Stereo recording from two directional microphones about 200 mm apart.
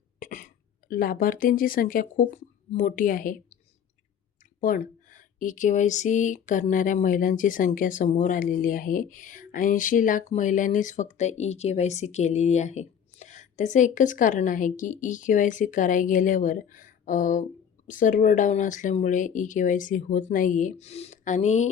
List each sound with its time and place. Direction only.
0.2 s speech: 45° left (ahead or behind)
4.6 s speech: 40° left (ahead or behind)